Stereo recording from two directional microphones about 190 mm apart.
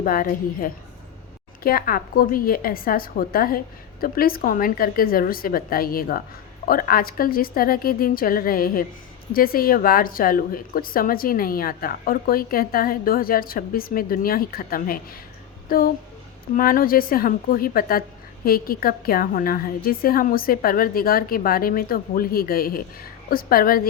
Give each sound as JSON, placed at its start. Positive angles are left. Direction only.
{"t": 0.0, "sound": "a woman's voice", "side_deg": 45}